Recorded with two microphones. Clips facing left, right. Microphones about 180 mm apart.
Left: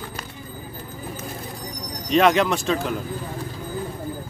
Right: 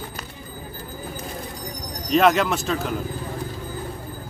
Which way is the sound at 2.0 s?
Centre (ahead or behind).